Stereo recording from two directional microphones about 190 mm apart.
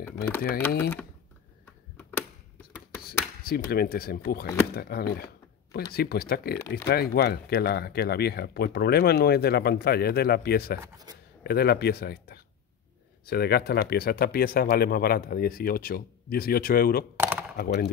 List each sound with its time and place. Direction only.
0.5 s speech: 10° left (ahead or behind)
2.0 s a sound: 10° left (ahead or behind)
3.4 s speech: 55° left (ahead or behind)
10.8 s speech: 20° right (ahead or behind)
11.4 s speech: 55° left (ahead or behind)
17.2 s a sound: 10° right (ahead or behind)